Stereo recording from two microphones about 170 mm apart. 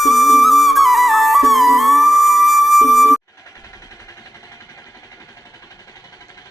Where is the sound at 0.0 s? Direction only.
Centre (ahead or behind).